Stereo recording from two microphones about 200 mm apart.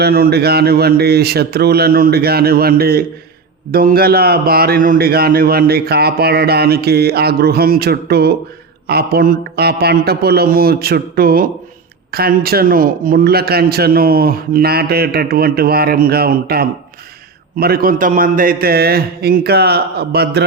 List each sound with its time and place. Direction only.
0.0 s a man's voice: 50° right (ahead or behind)